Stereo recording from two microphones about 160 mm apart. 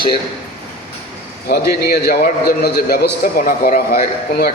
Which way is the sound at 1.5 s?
80° left.